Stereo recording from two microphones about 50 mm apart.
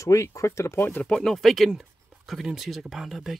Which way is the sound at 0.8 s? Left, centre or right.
Left.